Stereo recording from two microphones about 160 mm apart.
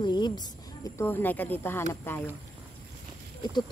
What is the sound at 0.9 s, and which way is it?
Speech, 10° left (ahead or behind).